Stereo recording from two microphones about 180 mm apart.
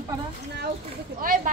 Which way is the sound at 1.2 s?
50° right (ahead or behind).